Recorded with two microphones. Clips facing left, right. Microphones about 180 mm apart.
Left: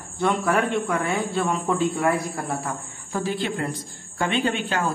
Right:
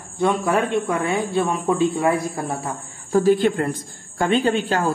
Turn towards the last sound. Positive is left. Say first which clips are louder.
# right 4 dB
turn(degrees=-40)  # may be behind; listen again after turning